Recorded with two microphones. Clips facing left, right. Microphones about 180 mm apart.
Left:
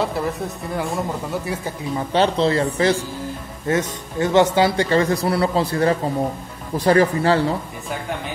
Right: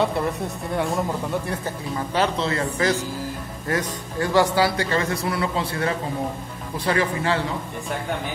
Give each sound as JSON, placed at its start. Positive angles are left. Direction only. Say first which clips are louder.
{"t": 0.0, "sound": "a woman's voice", "louder": "even", "side_deg": 0}
{"t": 2.1, "sound": "speech", "louder": "left 6 dB", "side_deg": 30}